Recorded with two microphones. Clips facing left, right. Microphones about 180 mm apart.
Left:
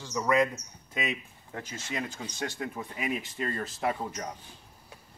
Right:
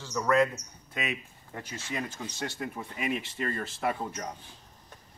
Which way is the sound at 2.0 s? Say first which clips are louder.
Left 1 dB; 15° left (ahead or behind).